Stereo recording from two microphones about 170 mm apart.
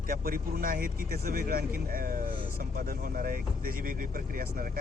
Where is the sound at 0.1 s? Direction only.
55° right (ahead or behind).